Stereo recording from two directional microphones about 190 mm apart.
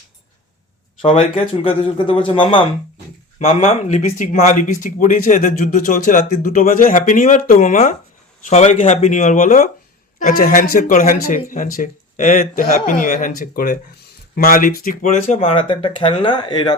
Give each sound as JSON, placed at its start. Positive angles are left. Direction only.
{"t": 1.0, "sound": "speech", "side_deg": 30}
{"t": 3.7, "sound": "speech", "side_deg": 40}
{"t": 15.3, "sound": "speech", "side_deg": 30}